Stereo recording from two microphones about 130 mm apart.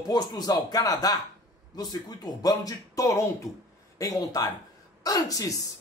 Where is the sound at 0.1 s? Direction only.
30° left (ahead or behind).